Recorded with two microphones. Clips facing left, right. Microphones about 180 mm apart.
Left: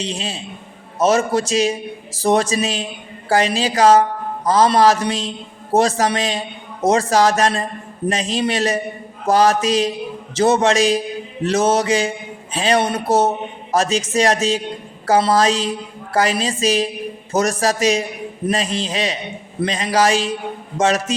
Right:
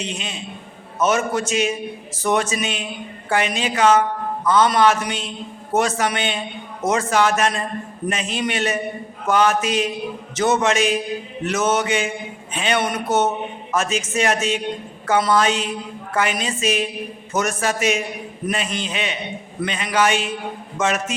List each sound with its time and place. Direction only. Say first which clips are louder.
0.0 s a man's voice: left 3 dB; 35° left (ahead or behind)